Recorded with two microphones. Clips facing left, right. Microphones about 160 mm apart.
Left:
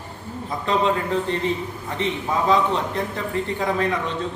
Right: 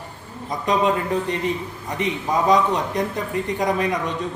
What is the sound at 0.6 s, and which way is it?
A man's voice, 15° right (ahead or behind).